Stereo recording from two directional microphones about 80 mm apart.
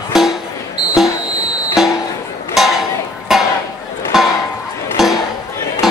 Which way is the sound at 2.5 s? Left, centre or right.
Centre.